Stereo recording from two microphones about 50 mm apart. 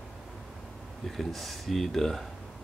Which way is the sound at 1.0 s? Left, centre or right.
Centre.